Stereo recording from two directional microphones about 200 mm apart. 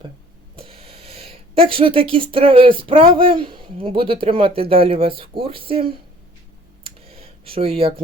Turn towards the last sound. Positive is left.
turn(degrees=-30)  # may be behind; listen again after turning